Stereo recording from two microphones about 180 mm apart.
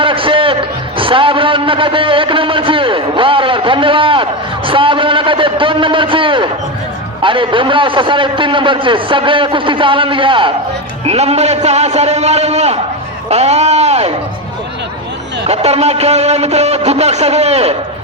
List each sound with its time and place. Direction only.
0.0 s a sound: 30° right (ahead or behind)
7.2 s a man's voice: 30° right (ahead or behind)
15.4 s a man's voice: 35° right (ahead or behind)